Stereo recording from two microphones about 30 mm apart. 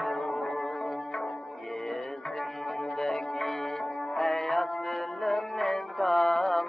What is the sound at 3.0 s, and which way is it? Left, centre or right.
Music, centre.